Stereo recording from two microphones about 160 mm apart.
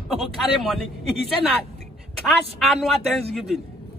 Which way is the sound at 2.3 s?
Centre (ahead or behind).